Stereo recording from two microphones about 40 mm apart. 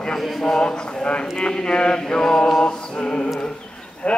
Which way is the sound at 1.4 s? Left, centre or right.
Left.